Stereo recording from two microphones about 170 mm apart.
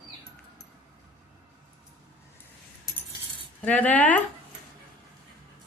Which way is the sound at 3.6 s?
10° left (ahead or behind).